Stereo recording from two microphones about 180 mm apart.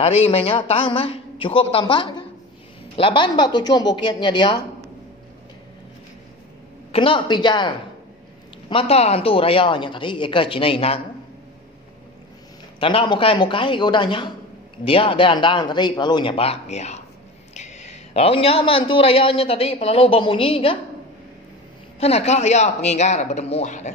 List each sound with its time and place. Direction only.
0.0 s a woman's voice: 35° left (ahead or behind)
6.9 s a woman's voice: 30° left (ahead or behind)
12.8 s a man's voice: 30° left (ahead or behind)
22.0 s a woman's voice: 35° left (ahead or behind)